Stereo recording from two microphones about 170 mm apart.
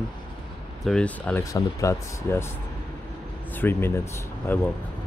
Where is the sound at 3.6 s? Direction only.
10° left (ahead or behind).